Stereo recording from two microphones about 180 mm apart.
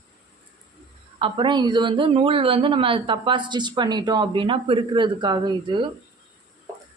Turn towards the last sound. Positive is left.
turn(degrees=-25)  # may be behind; listen again after turning